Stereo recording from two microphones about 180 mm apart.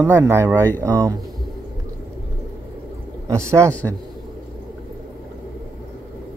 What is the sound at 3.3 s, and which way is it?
Speech, 15° right (ahead or behind).